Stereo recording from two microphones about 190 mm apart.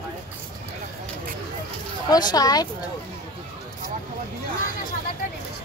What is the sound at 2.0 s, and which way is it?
Speech, 20° left (ahead or behind).